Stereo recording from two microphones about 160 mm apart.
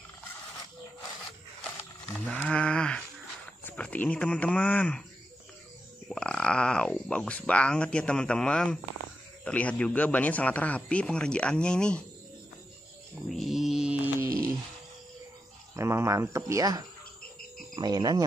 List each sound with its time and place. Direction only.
2.1 s speech: 10° left (ahead or behind)
6.0 s speech: 5° left (ahead or behind)
13.3 s a sound: centre (ahead or behind)
15.7 s speech: 15° right (ahead or behind)